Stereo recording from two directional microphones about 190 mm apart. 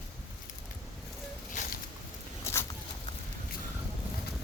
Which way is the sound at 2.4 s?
15° left (ahead or behind).